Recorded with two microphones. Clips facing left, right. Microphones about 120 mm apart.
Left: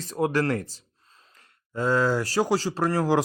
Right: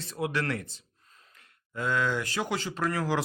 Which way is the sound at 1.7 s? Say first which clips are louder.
Left 6 dB; 30° left (ahead or behind).